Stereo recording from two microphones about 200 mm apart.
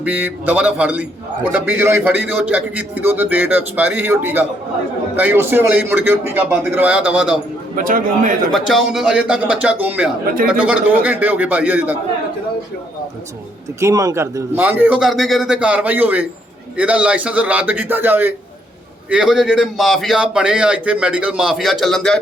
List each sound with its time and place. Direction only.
0.0 s a man's voice: 10° right (ahead or behind)
7.8 s a man's voice: 45° right (ahead or behind)
8.5 s a man's voice: centre (ahead or behind)
13.7 s a man's voice: 15° right (ahead or behind); by 22.2 s centre (ahead or behind)